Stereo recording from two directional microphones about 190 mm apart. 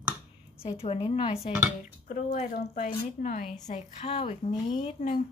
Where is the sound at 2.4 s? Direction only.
45° left (ahead or behind).